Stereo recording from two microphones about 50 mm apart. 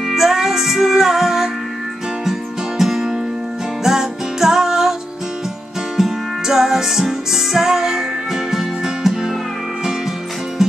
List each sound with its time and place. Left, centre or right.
0.1 s music: centre
2.8 s music: centre
5.9 s music: centre